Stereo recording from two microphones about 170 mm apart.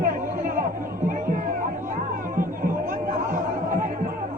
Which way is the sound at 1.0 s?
50° right (ahead or behind).